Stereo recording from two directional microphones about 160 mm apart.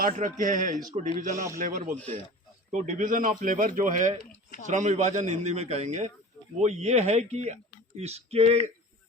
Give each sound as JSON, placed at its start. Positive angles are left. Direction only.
{"t": 0.0, "sound": "speech", "side_deg": -55}